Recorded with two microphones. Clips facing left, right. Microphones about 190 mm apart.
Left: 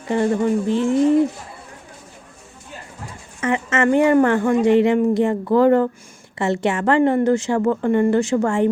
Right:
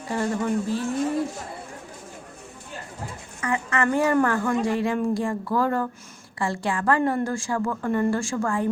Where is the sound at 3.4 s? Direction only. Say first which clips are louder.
Left 6 dB; 20° left (ahead or behind).